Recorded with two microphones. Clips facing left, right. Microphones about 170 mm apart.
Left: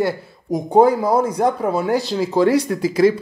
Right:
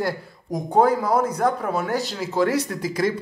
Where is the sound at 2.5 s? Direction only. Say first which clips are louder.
Left 7 dB; 10° left (ahead or behind).